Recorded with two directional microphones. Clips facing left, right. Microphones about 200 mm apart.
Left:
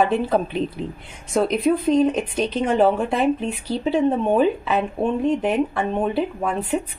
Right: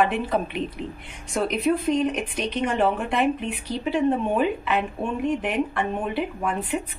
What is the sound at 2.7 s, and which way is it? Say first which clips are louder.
Speech: left 6 dB; 40° left (ahead or behind).